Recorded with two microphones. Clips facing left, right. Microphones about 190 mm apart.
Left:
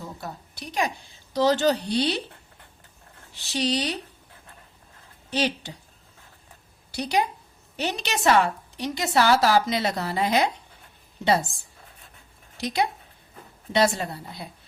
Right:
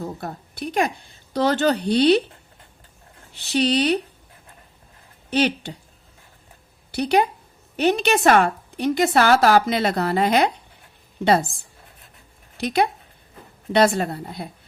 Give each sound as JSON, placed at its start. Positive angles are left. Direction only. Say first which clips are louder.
{"t": 0.2, "sound": "a woman's voice", "louder": "right 7 dB", "side_deg": -55}
{"t": 3.3, "sound": "speech", "louder": "right 6 dB", "side_deg": -60}
{"t": 5.3, "sound": "speech", "louder": "right 5 dB", "side_deg": -60}
{"t": 6.9, "sound": "speech", "louder": "right 6 dB", "side_deg": -60}
{"t": 12.5, "sound": "speech", "louder": "right 5 dB", "side_deg": -60}